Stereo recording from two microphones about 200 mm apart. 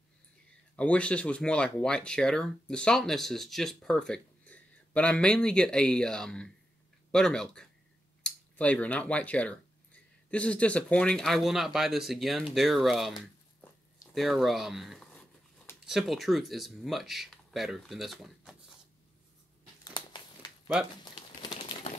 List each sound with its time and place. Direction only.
0.7 s speech: 5° left (ahead or behind)
19.8 s a sound: 20° left (ahead or behind)
21.0 s bird: 20° left (ahead or behind)